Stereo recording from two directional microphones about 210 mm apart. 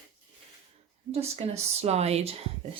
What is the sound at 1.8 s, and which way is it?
Speech, 30° right (ahead or behind).